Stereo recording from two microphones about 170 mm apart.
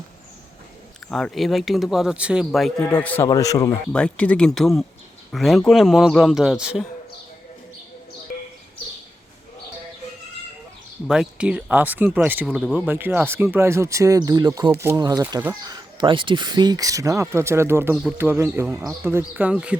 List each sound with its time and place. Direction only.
1.1 s a man's voice: centre (ahead or behind)
3.2 s speech: 20° left (ahead or behind)
3.9 s a man's voice: 5° left (ahead or behind)
11.1 s a man's voice: 5° right (ahead or behind)
12.9 s speech: 10° right (ahead or behind)
14.7 s speech: 15° right (ahead or behind)
16.0 s speech: 30° right (ahead or behind); by 19.8 s 5° right (ahead or behind)